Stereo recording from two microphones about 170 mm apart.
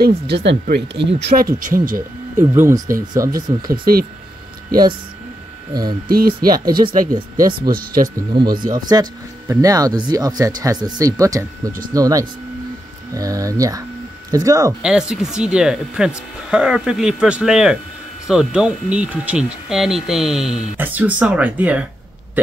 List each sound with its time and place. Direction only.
0.0 s speech: 85° right
1.6 s speech: 55° right (ahead or behind)
2.5 s speech: 15° right (ahead or behind)
3.7 s speech: 60° right (ahead or behind)
5.7 s speech: 25° right (ahead or behind)
6.0 s speech: 60° right (ahead or behind)
7.7 s speech: 60° right (ahead or behind)
8.2 s speech: 30° right (ahead or behind)
8.5 s speech: 55° right (ahead or behind)
8.7 s speech: 25° right (ahead or behind)
14.8 s speech: 5° right (ahead or behind)